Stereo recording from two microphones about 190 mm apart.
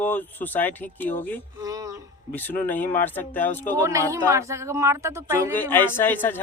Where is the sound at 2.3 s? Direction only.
10° left (ahead or behind).